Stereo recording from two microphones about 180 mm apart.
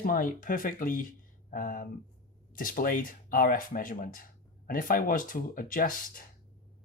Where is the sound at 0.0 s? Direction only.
50° left (ahead or behind).